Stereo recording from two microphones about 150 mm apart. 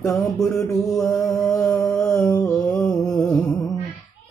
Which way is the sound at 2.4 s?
5° left (ahead or behind).